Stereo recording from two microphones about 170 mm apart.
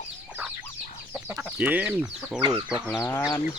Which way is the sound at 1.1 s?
10° right (ahead or behind).